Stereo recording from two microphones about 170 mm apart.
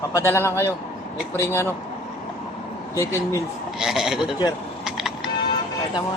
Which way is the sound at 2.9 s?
15° left (ahead or behind).